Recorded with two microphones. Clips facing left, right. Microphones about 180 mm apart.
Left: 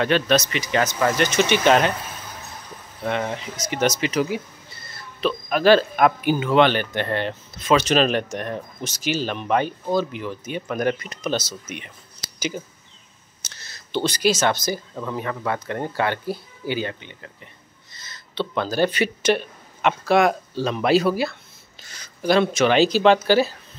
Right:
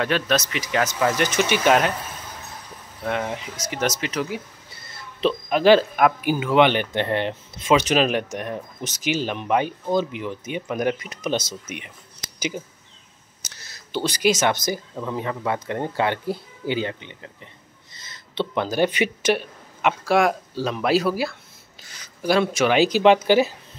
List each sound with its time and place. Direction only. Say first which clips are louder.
0.0 s speech: left 3 dB; centre (ahead or behind)
3.0 s speech: left 1 dB; 5° right (ahead or behind)
5.2 s speech: right 1 dB; 20° right (ahead or behind)
5.9 s speech: left 1 dB; 5° right (ahead or behind)
13.5 s speech: left 2 dB; 10° right (ahead or behind)